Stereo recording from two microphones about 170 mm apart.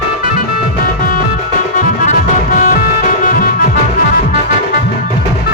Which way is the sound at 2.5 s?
55° left (ahead or behind).